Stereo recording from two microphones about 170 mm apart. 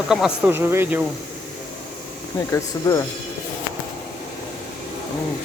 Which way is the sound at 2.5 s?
15° left (ahead or behind).